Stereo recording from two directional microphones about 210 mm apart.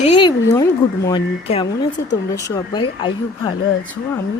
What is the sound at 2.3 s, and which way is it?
Speech, 15° left (ahead or behind).